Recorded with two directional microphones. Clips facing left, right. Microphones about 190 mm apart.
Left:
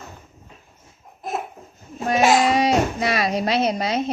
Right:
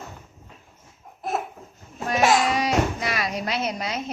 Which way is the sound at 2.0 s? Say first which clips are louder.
Left 3 dB; 25° left (ahead or behind).